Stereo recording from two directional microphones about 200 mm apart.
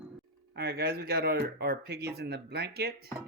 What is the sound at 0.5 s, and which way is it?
Speech, 50° right (ahead or behind).